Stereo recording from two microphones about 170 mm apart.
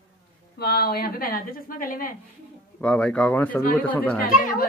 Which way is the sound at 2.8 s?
5° left (ahead or behind).